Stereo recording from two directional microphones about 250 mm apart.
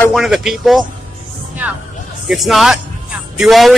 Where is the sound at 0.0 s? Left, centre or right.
Centre.